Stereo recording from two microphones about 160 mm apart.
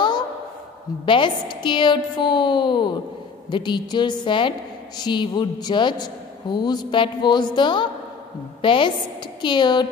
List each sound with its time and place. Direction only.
1.0 s a woman's voice: 30° left (ahead or behind)